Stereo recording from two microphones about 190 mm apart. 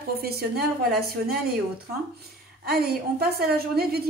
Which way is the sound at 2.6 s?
55° right (ahead or behind).